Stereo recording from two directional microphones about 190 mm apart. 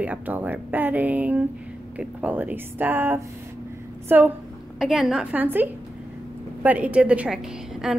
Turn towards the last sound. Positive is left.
turn(degrees=-5)  # may be behind; listen again after turning